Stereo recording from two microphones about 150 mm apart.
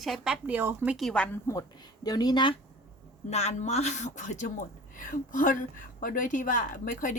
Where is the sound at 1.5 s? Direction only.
25° left (ahead or behind).